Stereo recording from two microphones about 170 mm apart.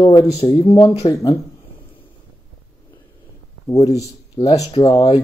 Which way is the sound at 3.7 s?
20° left (ahead or behind).